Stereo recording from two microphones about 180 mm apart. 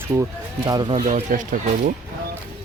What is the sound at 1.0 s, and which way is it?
Speech, 45° right (ahead or behind).